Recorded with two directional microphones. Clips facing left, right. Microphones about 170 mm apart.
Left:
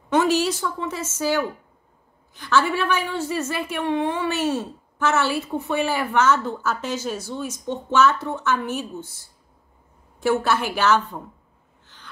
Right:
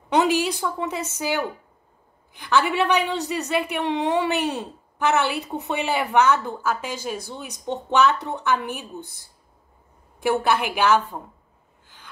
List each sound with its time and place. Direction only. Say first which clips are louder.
0.2 s a woman's voice: right 1 dB; 15° right (ahead or behind)
10.2 s a woman's voice: even; 15° right (ahead or behind)